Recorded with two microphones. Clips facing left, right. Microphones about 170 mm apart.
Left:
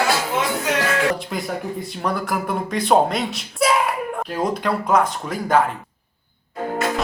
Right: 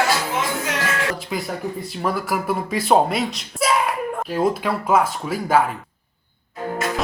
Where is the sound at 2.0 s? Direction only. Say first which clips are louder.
Right 1 dB; 5° right (ahead or behind).